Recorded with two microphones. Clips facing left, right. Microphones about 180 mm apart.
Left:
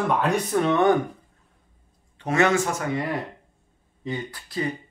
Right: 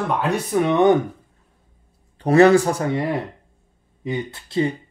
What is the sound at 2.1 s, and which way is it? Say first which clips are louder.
Speech: right 8 dB; 35° right (ahead or behind).